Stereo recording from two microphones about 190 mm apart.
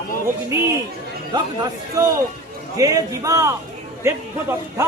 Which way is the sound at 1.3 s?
20° right (ahead or behind).